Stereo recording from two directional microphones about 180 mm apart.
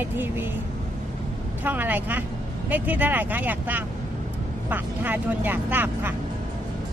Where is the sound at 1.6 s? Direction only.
10° right (ahead or behind).